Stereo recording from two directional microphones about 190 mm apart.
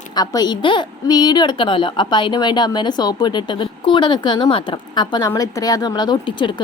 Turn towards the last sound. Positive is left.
turn(degrees=25)  # may be behind; listen again after turning